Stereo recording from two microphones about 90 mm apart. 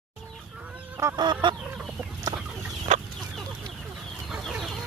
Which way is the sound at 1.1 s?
55° right (ahead or behind).